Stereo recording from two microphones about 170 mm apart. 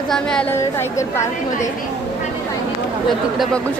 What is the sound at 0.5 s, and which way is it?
Speech, 15° left (ahead or behind).